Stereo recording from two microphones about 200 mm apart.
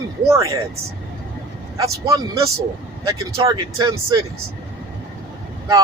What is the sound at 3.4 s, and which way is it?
Speech, 15° right (ahead or behind).